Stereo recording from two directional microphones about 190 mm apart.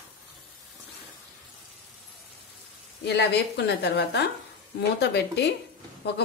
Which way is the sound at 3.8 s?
60° left (ahead or behind).